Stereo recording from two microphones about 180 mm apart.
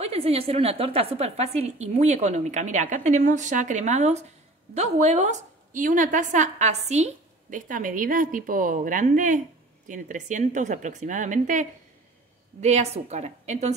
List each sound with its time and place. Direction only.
0.0 s a woman's voice: 35° right (ahead or behind)